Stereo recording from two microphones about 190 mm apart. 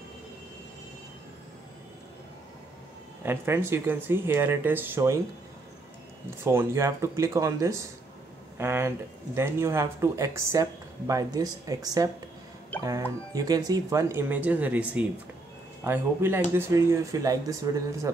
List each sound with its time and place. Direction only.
3.3 s speech: 15° right (ahead or behind)
6.4 s speech: 15° right (ahead or behind)